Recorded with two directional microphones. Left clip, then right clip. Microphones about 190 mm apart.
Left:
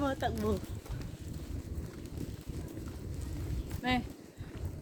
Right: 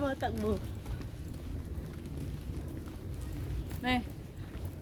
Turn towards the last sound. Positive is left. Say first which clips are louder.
# even
turn(degrees=0)  # may be behind; listen again after turning